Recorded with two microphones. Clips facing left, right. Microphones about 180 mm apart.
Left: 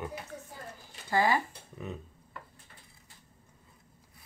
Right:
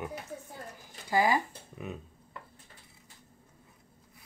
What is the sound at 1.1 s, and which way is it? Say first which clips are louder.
Speech: right 1 dB; 15° right (ahead or behind).